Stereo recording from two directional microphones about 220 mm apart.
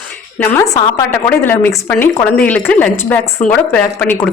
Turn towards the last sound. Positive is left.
turn(degrees=5)  # may be behind; listen again after turning